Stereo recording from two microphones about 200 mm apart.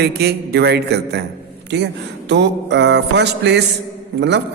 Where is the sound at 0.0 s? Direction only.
55° right (ahead or behind).